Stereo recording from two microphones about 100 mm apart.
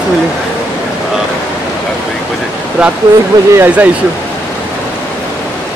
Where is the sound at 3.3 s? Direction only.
40° right (ahead or behind).